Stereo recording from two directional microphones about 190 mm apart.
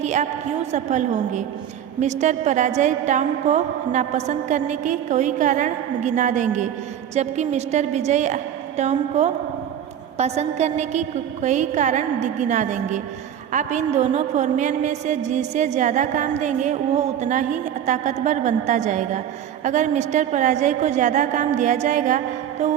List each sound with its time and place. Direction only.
0.0 s a woman's voice: 40° right (ahead or behind)